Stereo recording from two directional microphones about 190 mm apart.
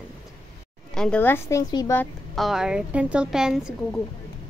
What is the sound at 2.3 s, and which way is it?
A woman's voice, centre (ahead or behind).